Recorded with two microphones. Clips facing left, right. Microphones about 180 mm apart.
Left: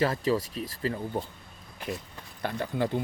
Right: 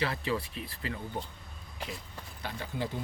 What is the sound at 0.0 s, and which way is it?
Speech, 40° left (ahead or behind).